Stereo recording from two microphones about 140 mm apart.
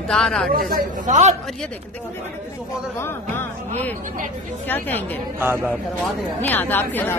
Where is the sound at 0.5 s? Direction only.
90° right; by 1.3 s 60° right (ahead or behind).